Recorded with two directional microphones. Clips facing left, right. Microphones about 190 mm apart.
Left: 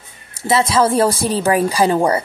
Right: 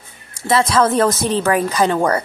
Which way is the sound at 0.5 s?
5° left (ahead or behind).